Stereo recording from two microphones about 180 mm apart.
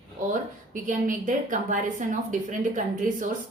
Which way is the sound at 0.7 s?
45° right (ahead or behind).